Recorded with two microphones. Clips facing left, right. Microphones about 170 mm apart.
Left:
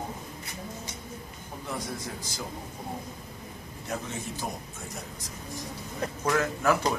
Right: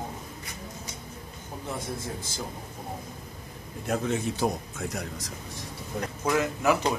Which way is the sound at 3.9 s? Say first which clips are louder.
Right 7 dB; 70° right (ahead or behind).